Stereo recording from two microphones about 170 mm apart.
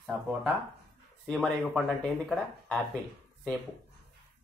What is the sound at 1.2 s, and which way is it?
Speech, centre (ahead or behind).